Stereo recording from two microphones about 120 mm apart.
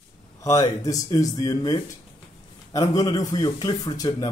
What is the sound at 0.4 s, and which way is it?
Speech, 25° left (ahead or behind).